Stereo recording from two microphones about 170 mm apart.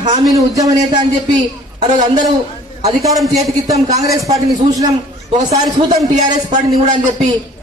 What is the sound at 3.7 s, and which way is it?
A man's voice, 20° right (ahead or behind).